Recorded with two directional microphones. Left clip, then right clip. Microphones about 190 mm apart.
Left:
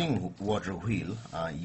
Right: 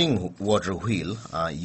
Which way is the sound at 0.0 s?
45° right (ahead or behind).